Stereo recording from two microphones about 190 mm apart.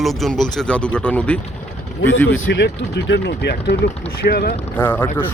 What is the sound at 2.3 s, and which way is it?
Speech, 65° left (ahead or behind).